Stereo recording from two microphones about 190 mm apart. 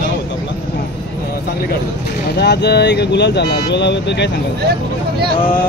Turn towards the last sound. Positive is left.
turn(degrees=65)  # may be behind; listen again after turning